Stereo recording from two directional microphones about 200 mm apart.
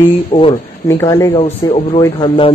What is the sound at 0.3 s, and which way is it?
Speech, 25° left (ahead or behind).